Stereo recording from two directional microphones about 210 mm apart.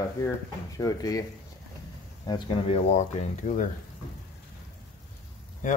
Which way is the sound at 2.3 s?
25° left (ahead or behind).